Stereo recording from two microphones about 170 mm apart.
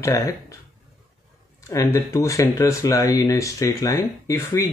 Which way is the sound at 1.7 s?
15° left (ahead or behind).